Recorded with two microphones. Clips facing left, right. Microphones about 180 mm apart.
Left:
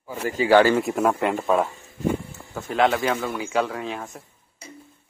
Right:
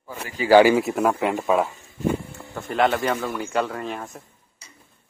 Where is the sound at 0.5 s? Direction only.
10° right (ahead or behind).